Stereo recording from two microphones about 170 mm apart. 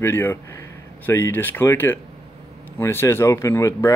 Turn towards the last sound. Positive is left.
turn(degrees=15)  # may be behind; listen again after turning